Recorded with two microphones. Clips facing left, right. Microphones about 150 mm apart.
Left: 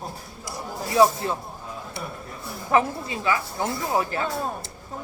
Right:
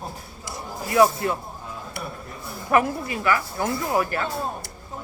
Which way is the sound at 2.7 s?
20° left (ahead or behind).